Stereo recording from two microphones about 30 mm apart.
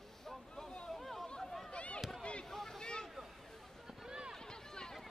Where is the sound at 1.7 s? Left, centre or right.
Left.